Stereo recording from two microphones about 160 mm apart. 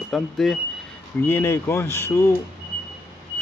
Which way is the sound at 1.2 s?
15° left (ahead or behind).